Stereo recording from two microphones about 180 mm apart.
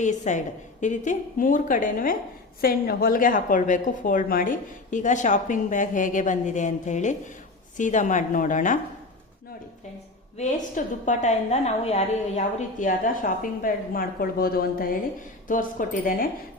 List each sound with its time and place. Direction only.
0.0 s a woman's voice: 40° left (ahead or behind)
11.0 s a woman's voice: 40° left (ahead or behind)